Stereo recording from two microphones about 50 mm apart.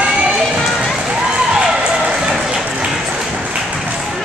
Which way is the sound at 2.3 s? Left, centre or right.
Centre.